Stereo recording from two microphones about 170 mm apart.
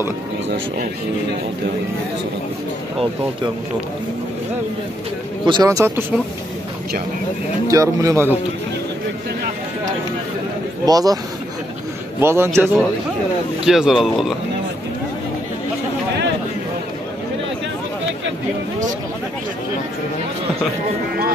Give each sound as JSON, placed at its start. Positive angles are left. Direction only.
{"t": 5.4, "sound": "speech", "side_deg": -25}
{"t": 7.6, "sound": "speech", "side_deg": -20}
{"t": 10.9, "sound": "speech", "side_deg": -20}
{"t": 12.2, "sound": "a man's voice", "side_deg": -15}
{"t": 13.7, "sound": "speech", "side_deg": 0}